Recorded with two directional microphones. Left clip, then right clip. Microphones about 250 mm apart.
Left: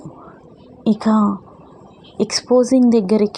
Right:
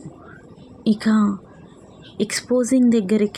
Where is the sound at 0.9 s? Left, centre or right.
Centre.